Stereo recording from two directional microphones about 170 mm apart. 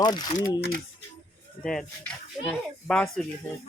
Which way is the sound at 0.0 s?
25° left (ahead or behind).